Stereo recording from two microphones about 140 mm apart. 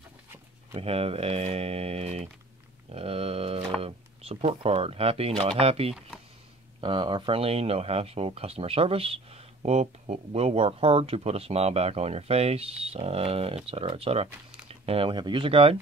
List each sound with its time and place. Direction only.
0.7 s speech: 45° right (ahead or behind)
2.9 s a sound: 45° right (ahead or behind)
3.8 s speech: 45° right (ahead or behind)